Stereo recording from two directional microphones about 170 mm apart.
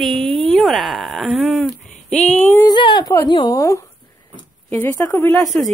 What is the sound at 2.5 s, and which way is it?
Speech, 25° left (ahead or behind).